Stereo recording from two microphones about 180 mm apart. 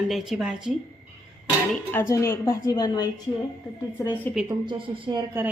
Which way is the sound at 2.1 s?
15° left (ahead or behind).